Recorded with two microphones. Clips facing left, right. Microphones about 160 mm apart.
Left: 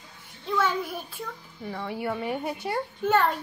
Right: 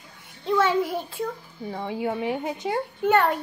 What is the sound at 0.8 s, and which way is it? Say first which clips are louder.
A woman's voice: right 7 dB; 25° right (ahead or behind).